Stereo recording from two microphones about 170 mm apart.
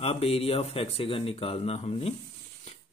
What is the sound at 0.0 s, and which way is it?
A man's voice, 35° left (ahead or behind).